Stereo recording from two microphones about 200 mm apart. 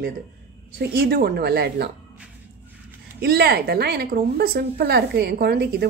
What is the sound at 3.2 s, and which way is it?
A woman's voice, 50° right (ahead or behind).